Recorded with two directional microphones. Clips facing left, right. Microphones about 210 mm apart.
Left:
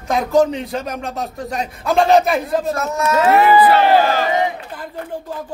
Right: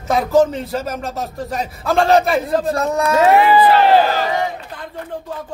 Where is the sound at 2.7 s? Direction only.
35° right (ahead or behind).